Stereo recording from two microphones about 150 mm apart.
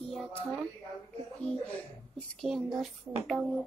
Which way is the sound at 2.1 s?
Centre (ahead or behind).